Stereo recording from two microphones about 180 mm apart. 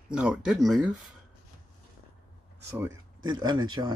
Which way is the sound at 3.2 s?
25° right (ahead or behind).